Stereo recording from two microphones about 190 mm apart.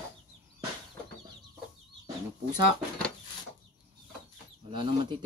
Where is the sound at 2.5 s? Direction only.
5° left (ahead or behind).